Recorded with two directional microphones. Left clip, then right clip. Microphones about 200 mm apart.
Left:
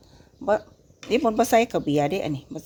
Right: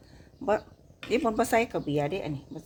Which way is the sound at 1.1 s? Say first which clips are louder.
Left 5 dB; 25° left (ahead or behind).